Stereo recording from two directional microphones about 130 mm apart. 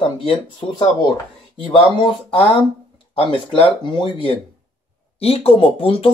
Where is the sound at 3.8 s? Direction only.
40° left (ahead or behind).